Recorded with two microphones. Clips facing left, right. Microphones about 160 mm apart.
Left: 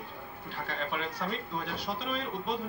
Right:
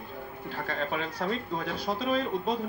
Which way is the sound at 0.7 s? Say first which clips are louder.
Right 3 dB; 40° right (ahead or behind).